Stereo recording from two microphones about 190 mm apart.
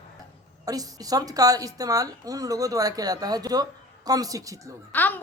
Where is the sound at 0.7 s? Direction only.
20° right (ahead or behind).